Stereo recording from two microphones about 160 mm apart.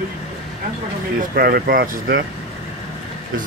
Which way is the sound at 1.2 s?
65° right (ahead or behind).